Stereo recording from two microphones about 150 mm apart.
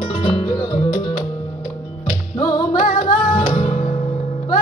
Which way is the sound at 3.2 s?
35° left (ahead or behind).